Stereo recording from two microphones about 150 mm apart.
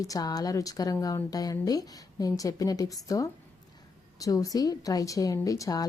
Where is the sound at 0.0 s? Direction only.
25° left (ahead or behind).